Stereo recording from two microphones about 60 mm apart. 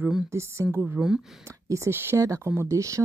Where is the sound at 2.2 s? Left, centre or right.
Right.